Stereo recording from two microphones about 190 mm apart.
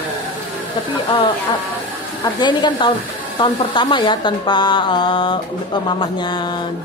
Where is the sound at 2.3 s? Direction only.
25° left (ahead or behind).